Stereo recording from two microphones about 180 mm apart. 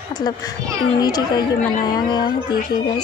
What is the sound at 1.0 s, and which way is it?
Speech, 20° left (ahead or behind).